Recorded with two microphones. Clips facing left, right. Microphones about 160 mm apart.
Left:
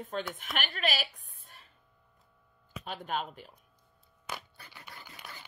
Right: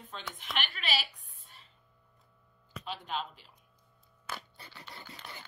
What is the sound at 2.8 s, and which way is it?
Speech, 50° left (ahead or behind).